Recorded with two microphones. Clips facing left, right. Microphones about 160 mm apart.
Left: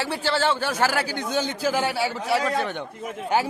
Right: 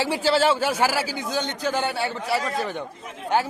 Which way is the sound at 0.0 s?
10° right (ahead or behind).